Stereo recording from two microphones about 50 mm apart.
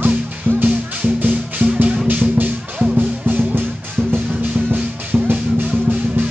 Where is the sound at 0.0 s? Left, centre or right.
Right.